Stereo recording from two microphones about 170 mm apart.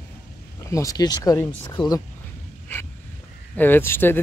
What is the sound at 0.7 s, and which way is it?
Speech, 20° left (ahead or behind).